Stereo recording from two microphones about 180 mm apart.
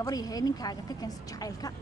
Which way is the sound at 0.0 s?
20° left (ahead or behind).